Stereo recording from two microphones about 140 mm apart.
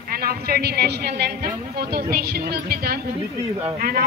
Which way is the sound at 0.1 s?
90° right.